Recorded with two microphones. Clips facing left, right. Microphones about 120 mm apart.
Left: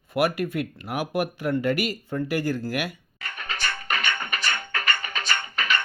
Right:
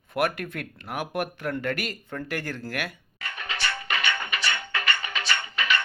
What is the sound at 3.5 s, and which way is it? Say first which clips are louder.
Music: left 1 dB; 45° left (ahead or behind).